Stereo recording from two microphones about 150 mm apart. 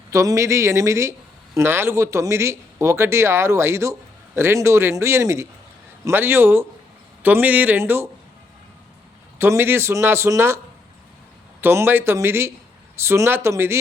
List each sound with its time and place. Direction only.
0.1 s speech: 20° right (ahead or behind)
9.4 s speech: 15° right (ahead or behind)
11.6 s speech: 15° right (ahead or behind)